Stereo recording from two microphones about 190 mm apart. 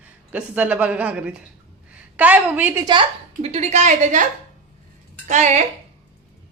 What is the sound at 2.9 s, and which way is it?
A woman's voice, 30° right (ahead or behind).